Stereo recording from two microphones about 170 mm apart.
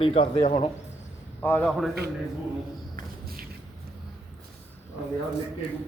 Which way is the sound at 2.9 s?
60° right (ahead or behind).